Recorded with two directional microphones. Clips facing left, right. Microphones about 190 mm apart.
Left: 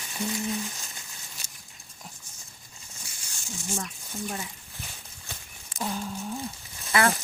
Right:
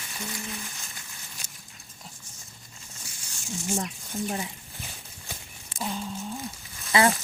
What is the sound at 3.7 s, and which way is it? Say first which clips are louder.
Speech: right 4 dB; 35° right (ahead or behind).